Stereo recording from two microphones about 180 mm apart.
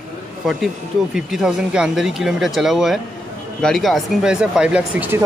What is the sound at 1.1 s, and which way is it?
Speech, 5° right (ahead or behind).